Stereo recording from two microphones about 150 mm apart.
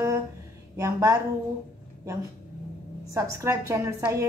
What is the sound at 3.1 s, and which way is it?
A woman's voice, 20° right (ahead or behind).